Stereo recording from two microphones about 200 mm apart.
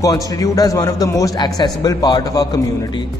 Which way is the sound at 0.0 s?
15° left (ahead or behind).